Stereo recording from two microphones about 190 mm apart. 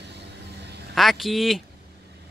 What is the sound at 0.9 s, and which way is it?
Speech, centre (ahead or behind).